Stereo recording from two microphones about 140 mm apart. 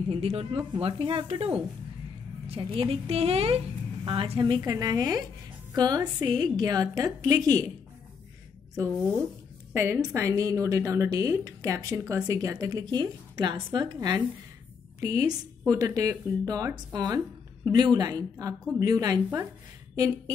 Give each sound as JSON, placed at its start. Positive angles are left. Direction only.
{"t": 0.1, "sound": "a woman's voice", "side_deg": -45}
{"t": 9.8, "sound": "a woman's voice", "side_deg": -15}